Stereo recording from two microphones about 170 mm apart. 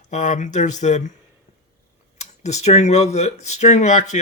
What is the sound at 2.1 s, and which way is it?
Speech, 40° left (ahead or behind).